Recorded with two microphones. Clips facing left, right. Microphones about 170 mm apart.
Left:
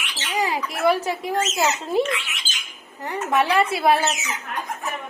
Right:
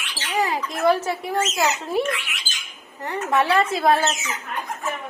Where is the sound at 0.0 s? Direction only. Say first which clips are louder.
Right 1 dB; 20° left (ahead or behind).